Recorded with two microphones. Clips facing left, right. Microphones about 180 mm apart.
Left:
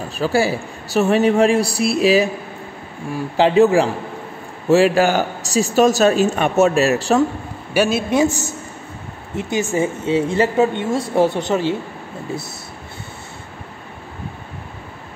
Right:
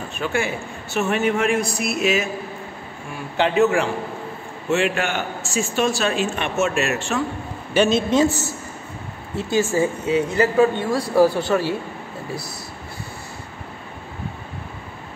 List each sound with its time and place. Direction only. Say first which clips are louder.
0.2 s speech: left 6 dB; 35° left (ahead or behind)
7.7 s a man's voice: even; 10° left (ahead or behind)